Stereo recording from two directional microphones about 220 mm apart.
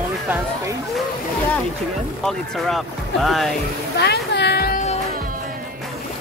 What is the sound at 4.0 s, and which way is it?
Music, 50° left (ahead or behind).